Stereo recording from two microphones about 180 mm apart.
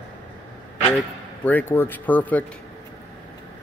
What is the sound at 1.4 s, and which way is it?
Speech, 10° left (ahead or behind).